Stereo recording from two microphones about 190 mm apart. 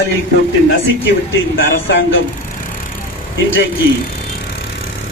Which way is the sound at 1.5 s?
90° left.